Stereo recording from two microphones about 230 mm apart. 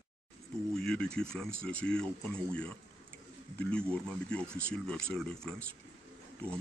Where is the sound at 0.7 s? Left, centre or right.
Centre.